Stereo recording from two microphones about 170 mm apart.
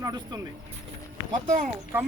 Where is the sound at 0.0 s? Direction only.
20° right (ahead or behind).